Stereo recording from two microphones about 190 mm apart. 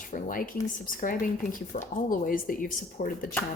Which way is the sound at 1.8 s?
45° left (ahead or behind).